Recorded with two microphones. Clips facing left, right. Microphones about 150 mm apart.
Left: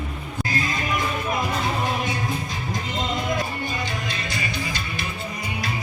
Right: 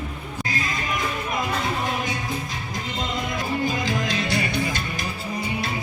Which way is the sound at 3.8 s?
90° right.